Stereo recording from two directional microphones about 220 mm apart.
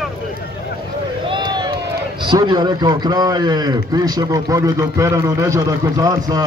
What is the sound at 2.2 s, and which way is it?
A man's voice, 20° right (ahead or behind).